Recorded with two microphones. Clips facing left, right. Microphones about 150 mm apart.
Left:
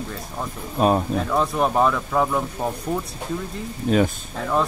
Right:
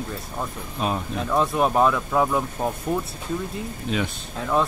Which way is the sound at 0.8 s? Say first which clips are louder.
Left 7 dB; 45° left (ahead or behind).